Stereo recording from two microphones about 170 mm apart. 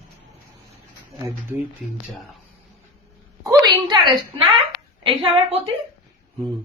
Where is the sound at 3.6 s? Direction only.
25° right (ahead or behind).